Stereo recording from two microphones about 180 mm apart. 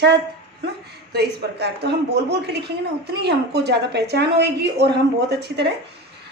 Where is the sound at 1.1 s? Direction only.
65° right (ahead or behind).